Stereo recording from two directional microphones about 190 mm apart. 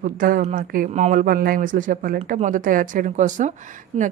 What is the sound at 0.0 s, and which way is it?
Speech, 45° right (ahead or behind).